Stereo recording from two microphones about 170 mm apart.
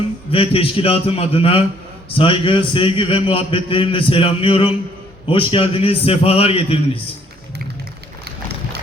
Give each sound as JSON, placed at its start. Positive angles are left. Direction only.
{"t": 0.3, "sound": "a man's voice", "side_deg": 35}